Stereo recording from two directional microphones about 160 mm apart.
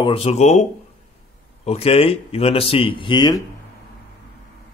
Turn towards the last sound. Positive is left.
turn(degrees=25)  # may be behind; listen again after turning